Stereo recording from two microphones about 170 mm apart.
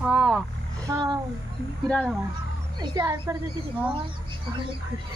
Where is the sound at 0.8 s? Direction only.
20° right (ahead or behind).